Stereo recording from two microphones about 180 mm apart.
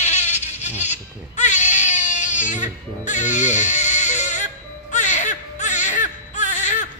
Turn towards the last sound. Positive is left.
turn(degrees=40)  # may be behind; listen again after turning